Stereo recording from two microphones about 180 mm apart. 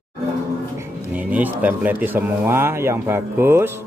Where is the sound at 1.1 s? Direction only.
10° right (ahead or behind).